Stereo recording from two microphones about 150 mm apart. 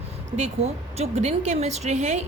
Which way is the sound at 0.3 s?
45° right (ahead or behind).